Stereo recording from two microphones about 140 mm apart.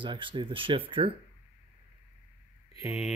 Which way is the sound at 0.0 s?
35° right (ahead or behind).